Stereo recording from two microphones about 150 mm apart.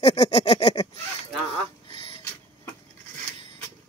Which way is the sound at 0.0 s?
45° left (ahead or behind).